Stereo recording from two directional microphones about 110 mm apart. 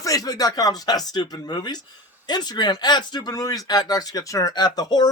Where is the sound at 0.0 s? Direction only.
35° left (ahead or behind).